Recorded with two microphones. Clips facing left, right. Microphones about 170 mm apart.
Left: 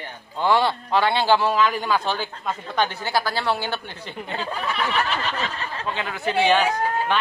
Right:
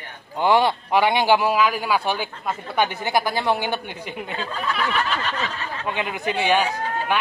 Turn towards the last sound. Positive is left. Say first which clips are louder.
# left 3 dB
turn(degrees=-10)  # may be behind; listen again after turning